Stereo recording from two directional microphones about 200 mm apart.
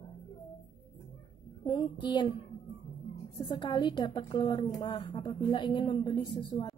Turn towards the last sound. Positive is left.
turn(degrees=20)  # may be behind; listen again after turning